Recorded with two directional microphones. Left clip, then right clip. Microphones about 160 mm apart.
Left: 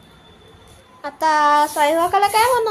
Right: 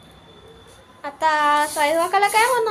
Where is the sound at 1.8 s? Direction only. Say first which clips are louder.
Left 2 dB; 20° left (ahead or behind).